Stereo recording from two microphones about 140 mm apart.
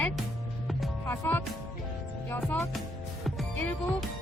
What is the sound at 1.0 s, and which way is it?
Speech, 15° left (ahead or behind).